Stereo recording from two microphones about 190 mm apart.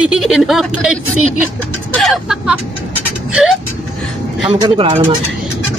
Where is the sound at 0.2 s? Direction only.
Centre (ahead or behind).